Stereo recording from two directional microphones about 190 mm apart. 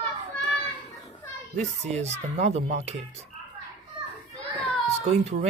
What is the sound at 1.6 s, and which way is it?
Speech, 35° right (ahead or behind).